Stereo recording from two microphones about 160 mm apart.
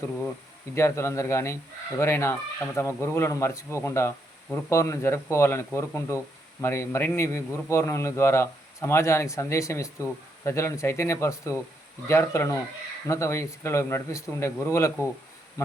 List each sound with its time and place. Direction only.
0.8 s speech: 15° left (ahead or behind)
15.6 s insect: 20° left (ahead or behind)